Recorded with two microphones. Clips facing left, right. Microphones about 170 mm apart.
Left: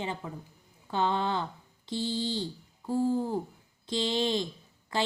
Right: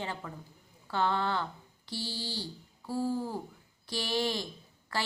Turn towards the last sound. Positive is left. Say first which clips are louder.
# left 5 dB
turn(degrees=20)  # may be behind; listen again after turning